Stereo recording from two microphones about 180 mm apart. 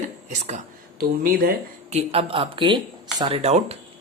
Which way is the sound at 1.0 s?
55° right (ahead or behind).